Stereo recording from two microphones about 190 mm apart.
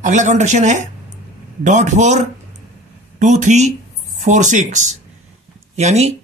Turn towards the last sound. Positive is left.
turn(degrees=-35)  # may be behind; listen again after turning